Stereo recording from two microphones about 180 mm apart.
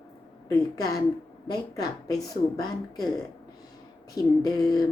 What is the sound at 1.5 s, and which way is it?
A woman's voice, 20° left (ahead or behind).